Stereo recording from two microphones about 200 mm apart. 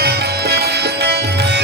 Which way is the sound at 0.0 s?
55° right (ahead or behind).